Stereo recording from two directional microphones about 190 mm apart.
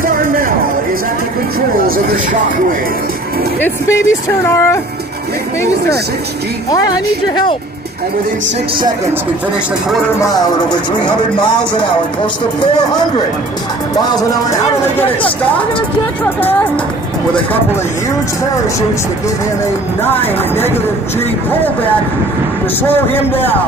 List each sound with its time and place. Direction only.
0.0 s a sound: 50° right (ahead or behind)
3.6 s a man's voice: 15° left (ahead or behind)
11.7 s speech: 25° left (ahead or behind)
13.9 s speech: 20° left (ahead or behind)
22.8 s a man's voice: 10° left (ahead or behind)